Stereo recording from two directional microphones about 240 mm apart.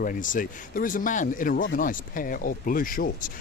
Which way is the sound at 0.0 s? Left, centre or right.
Left.